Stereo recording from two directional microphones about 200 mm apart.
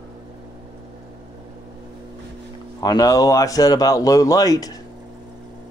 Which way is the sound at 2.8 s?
20° left (ahead or behind).